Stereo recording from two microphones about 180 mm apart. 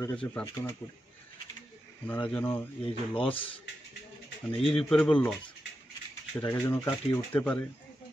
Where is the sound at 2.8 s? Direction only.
30° left (ahead or behind).